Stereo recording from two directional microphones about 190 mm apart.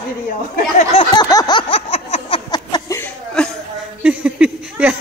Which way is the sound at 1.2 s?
20° left (ahead or behind).